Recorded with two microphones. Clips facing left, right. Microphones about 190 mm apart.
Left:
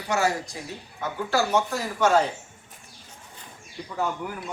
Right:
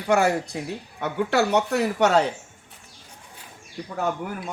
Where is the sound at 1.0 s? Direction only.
65° right (ahead or behind).